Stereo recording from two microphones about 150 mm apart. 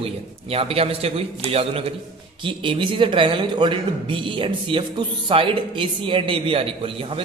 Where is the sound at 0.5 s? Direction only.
40° right (ahead or behind).